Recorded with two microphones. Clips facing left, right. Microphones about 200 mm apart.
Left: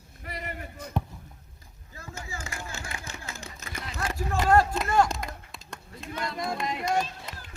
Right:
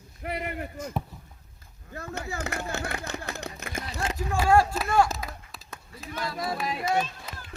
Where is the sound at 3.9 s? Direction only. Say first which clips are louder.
Even; 25° right (ahead or behind).